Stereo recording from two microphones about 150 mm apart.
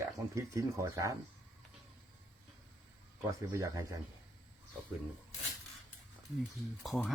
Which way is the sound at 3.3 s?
20° right (ahead or behind).